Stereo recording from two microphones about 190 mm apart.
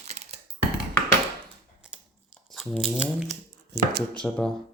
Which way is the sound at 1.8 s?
5° right (ahead or behind).